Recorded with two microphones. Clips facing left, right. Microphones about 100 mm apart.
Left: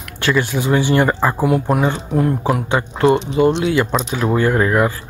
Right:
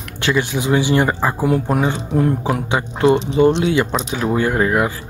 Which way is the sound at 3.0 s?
35° left (ahead or behind).